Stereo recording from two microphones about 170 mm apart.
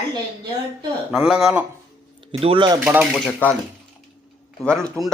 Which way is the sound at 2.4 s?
30° right (ahead or behind).